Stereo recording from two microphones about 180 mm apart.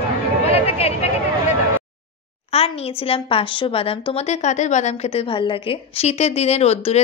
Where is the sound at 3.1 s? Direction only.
30° left (ahead or behind).